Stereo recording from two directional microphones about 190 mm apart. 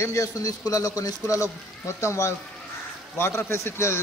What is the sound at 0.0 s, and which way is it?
A man's voice, 15° left (ahead or behind).